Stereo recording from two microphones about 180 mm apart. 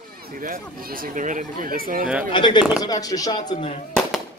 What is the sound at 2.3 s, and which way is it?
Speech, 25° left (ahead or behind).